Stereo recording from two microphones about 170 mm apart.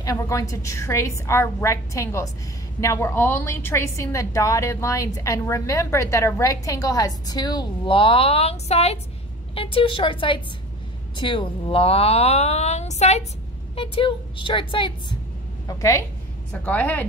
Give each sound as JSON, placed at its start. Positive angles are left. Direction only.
{"t": 0.0, "sound": "a woman's voice", "side_deg": 20}
{"t": 13.7, "sound": "a woman's voice", "side_deg": 30}
{"t": 16.6, "sound": "a woman's voice", "side_deg": 10}